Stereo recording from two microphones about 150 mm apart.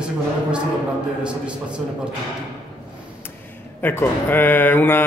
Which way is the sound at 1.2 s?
5° right (ahead or behind).